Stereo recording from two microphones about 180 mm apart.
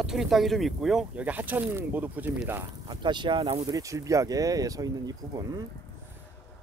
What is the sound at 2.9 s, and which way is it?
Speech, 25° right (ahead or behind).